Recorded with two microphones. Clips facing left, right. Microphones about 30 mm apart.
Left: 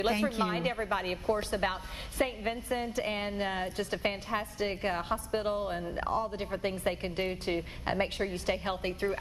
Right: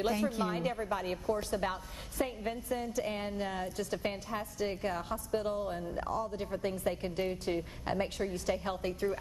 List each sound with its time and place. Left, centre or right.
0.0 s a woman's voice: left